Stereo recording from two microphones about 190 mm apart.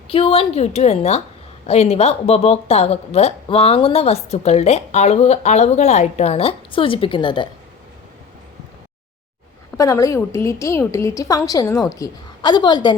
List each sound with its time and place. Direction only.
0.1 s speech: 30° left (ahead or behind)
9.7 s a woman's voice: 15° left (ahead or behind)